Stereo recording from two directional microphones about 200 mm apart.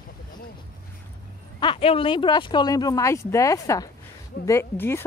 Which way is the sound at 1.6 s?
25° left (ahead or behind).